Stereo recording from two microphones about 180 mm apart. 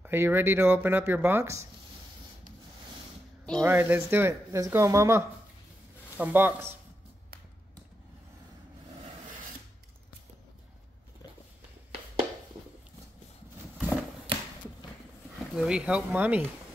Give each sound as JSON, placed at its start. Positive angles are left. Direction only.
{"t": 0.0, "sound": "speech", "side_deg": -10}
{"t": 3.6, "sound": "speech", "side_deg": -10}
{"t": 13.7, "sound": "a sound", "side_deg": -10}
{"t": 15.5, "sound": "speech", "side_deg": -5}